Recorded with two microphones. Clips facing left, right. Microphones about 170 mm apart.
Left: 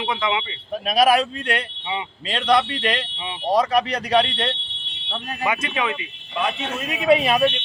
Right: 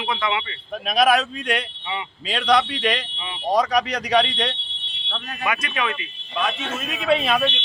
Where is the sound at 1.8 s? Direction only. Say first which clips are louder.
Left 2 dB; 20° left (ahead or behind).